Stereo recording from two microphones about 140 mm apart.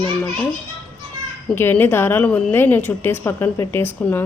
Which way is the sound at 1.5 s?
15° left (ahead or behind).